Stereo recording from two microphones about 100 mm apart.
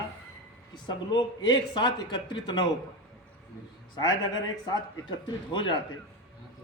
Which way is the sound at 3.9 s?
45° left (ahead or behind).